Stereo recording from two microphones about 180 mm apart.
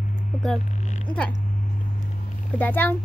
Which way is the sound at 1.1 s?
25° left (ahead or behind).